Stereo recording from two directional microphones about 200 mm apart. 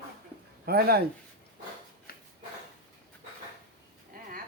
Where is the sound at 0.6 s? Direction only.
50° right (ahead or behind).